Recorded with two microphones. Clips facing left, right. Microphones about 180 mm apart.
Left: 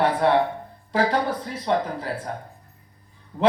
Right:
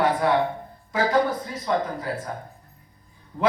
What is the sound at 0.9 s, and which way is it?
Speech, 30° left (ahead or behind).